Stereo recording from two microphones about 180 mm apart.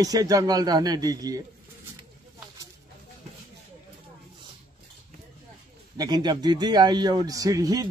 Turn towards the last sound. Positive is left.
turn(degrees=-20)  # may be behind; listen again after turning